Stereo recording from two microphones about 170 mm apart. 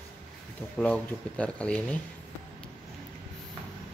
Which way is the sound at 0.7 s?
5° left (ahead or behind).